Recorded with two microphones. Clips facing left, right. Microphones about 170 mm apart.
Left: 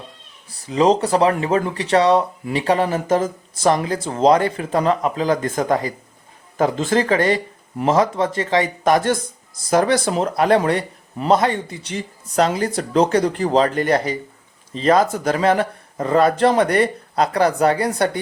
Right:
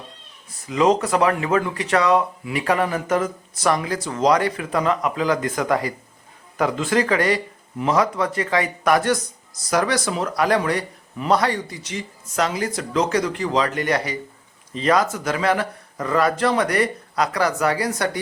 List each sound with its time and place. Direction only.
0.5 s speech: 35° left (ahead or behind)